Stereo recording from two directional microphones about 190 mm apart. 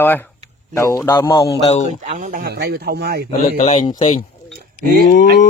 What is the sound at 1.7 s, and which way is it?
Speech, 40° left (ahead or behind).